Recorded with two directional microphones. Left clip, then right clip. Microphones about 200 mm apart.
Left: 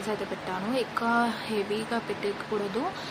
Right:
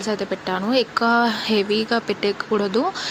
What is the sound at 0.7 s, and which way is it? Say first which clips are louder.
Speech: right 9 dB; 30° right (ahead or behind).